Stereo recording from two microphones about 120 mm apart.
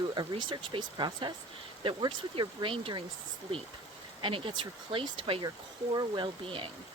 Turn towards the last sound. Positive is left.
turn(degrees=-45)  # may be behind; listen again after turning